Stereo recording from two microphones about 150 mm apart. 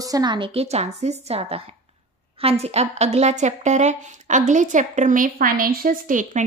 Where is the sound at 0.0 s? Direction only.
25° right (ahead or behind); by 1.6 s 40° right (ahead or behind).